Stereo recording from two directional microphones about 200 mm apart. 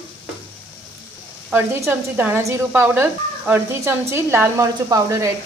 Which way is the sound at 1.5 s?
10° right (ahead or behind).